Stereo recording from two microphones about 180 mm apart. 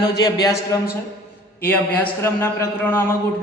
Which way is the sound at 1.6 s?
10° left (ahead or behind).